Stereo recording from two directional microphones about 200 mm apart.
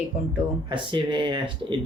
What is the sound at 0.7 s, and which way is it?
Speech, 25° right (ahead or behind).